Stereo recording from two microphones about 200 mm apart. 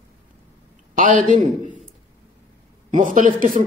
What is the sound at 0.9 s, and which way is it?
Speech, 40° right (ahead or behind).